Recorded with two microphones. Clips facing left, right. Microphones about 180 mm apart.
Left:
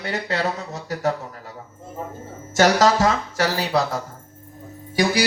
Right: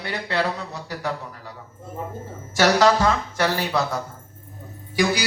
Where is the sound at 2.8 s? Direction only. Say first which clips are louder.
Even; 40° left (ahead or behind).